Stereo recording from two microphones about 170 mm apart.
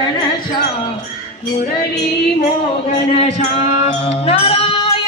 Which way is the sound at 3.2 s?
40° left (ahead or behind).